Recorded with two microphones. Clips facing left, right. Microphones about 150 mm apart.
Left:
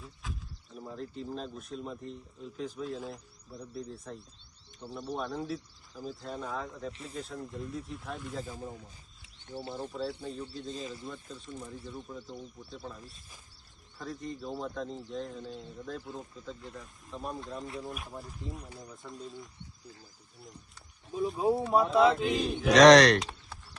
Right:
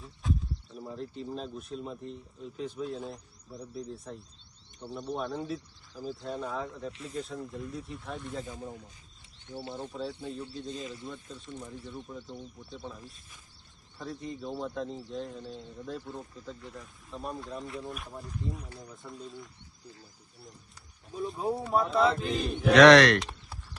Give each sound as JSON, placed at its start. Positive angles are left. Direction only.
{"t": 0.7, "sound": "speech", "side_deg": 0}
{"t": 9.9, "sound": "speech", "side_deg": 0}
{"t": 21.2, "sound": "speech", "side_deg": 0}
{"t": 22.7, "sound": "speech", "side_deg": 40}